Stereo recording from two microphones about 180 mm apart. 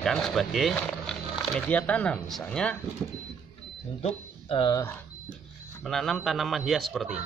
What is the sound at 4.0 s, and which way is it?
Speech, 30° left (ahead or behind).